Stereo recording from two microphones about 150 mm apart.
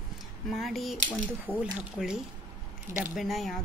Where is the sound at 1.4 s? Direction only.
10° right (ahead or behind).